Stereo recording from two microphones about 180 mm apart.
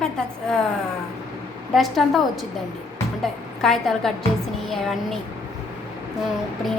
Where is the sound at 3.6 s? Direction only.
Centre (ahead or behind).